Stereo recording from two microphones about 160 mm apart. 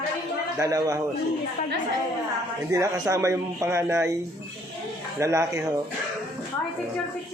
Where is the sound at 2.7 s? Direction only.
20° right (ahead or behind).